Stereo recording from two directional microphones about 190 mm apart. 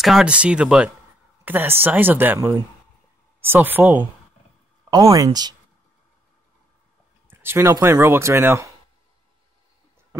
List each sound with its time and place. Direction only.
0.0 s speech: 5° right (ahead or behind); by 5.6 s 20° right (ahead or behind)
7.2 s speech: 10° right (ahead or behind)